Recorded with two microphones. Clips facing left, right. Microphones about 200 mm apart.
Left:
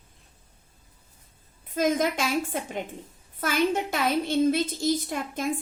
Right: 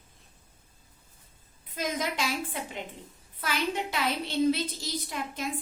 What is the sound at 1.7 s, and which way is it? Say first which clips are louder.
A woman's voice: left 7 dB; 50° left (ahead or behind).